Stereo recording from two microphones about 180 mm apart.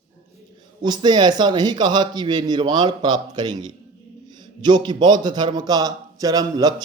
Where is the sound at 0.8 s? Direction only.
25° right (ahead or behind).